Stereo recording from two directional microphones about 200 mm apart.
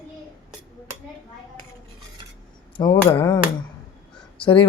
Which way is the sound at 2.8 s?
20° left (ahead or behind).